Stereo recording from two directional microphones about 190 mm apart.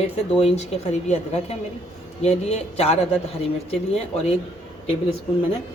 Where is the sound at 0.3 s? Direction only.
35° left (ahead or behind).